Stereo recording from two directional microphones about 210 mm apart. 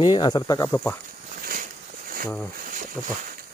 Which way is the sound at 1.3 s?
40° right (ahead or behind).